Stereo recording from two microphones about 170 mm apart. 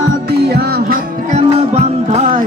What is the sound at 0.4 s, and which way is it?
Music, 70° right (ahead or behind).